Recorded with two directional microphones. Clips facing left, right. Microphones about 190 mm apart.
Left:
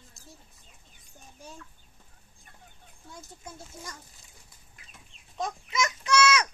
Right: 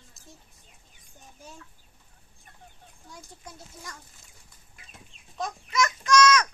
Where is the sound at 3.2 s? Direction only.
25° left (ahead or behind).